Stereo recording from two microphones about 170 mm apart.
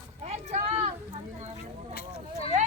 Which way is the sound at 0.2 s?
40° right (ahead or behind).